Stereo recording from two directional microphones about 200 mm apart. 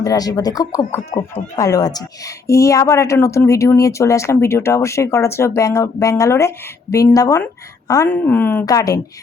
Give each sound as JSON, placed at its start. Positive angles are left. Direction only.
{"t": 0.0, "sound": "speech", "side_deg": 20}